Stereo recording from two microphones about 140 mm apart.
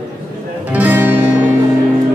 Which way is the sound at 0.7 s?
10° right (ahead or behind).